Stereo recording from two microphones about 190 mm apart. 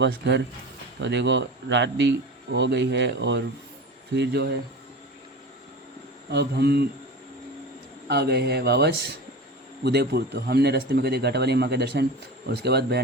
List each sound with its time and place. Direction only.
0.0 s speech: 65° right (ahead or behind)
6.3 s speech: 60° right (ahead or behind)
8.0 s speech: 60° right (ahead or behind)